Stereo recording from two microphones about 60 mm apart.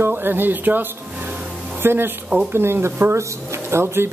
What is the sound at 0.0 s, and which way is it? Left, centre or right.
Speech, right.